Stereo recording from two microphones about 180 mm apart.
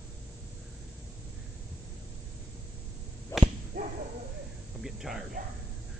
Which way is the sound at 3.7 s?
50° right (ahead or behind).